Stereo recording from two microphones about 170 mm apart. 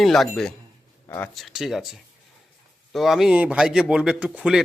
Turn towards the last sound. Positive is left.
turn(degrees=-5)  # may be behind; listen again after turning